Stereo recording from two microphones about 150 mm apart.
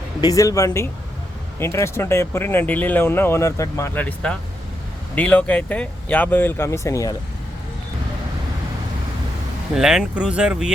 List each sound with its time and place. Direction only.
0.2 s speech: 25° left (ahead or behind)
9.7 s speech: 5° right (ahead or behind)